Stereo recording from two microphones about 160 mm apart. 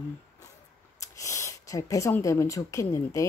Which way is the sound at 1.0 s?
20° left (ahead or behind).